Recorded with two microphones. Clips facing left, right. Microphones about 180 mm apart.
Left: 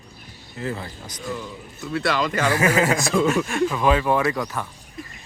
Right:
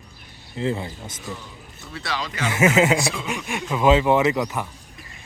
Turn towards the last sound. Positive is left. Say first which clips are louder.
# right 3 dB
turn(degrees=-15)  # may be behind; listen again after turning